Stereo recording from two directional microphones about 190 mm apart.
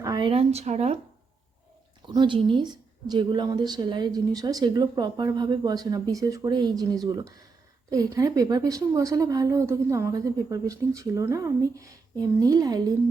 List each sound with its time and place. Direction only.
0.0 s speech: 20° right (ahead or behind)
2.0 s a woman's voice: 25° right (ahead or behind)